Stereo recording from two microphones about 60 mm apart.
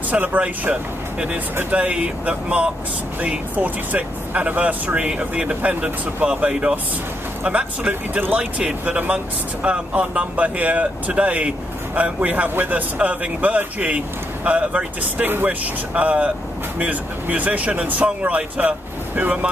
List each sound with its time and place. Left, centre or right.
0.1 s speech: right
15.2 s speech: right
15.9 s speech: right